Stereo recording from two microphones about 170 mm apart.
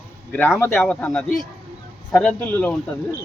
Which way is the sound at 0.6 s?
5° left (ahead or behind).